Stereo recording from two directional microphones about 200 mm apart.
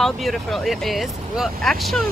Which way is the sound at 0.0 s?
Centre (ahead or behind).